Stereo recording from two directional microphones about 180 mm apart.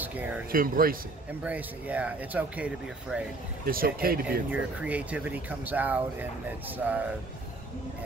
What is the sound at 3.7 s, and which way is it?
Speech, 55° right (ahead or behind).